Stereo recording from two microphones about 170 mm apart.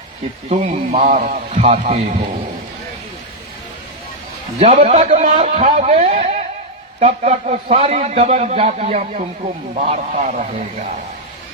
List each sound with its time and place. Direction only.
0.5 s a man's voice: 45° right (ahead or behind)
4.6 s a man's voice: 35° right (ahead or behind)